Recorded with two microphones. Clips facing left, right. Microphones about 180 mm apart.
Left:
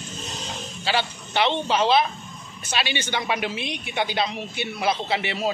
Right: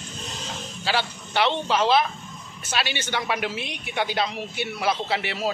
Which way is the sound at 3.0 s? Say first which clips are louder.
Left 1 dB; 20° left (ahead or behind).